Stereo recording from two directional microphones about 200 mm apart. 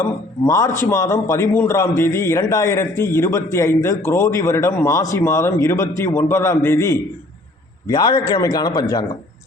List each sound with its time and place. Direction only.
0.0 s a man's voice: 15° left (ahead or behind)